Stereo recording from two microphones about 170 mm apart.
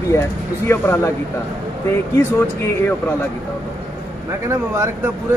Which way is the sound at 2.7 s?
10° left (ahead or behind).